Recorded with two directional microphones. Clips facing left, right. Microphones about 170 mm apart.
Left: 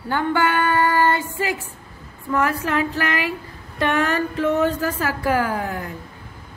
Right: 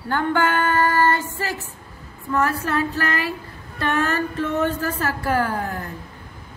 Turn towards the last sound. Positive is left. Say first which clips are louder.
# left 1 dB
turn(degrees=10)  # may be behind; listen again after turning